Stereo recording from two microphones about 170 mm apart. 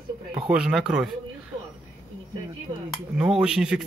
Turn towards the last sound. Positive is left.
turn(degrees=-5)  # may be behind; listen again after turning